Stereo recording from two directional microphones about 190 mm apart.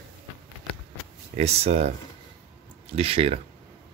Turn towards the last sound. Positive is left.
turn(degrees=-30)  # may be behind; listen again after turning